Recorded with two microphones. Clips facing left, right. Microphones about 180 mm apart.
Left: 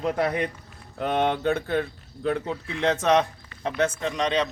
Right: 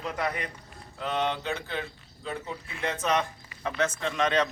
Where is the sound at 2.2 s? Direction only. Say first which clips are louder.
Left 10 dB; 65° left (ahead or behind).